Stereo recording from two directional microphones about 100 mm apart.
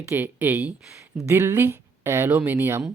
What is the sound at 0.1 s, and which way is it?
Speech, 20° right (ahead or behind).